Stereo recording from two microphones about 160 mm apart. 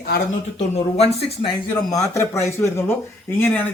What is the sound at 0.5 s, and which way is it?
Speech, 40° left (ahead or behind).